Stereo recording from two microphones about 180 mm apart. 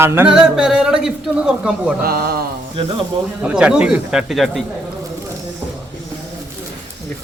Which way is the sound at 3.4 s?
5° right (ahead or behind).